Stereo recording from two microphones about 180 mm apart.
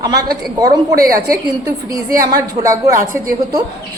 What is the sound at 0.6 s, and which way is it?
Speech, 20° right (ahead or behind).